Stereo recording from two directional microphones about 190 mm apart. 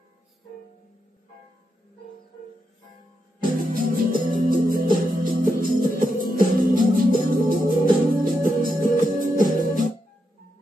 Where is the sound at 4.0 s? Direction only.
45° right (ahead or behind).